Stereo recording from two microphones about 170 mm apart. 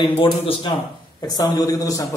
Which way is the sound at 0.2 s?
30° left (ahead or behind).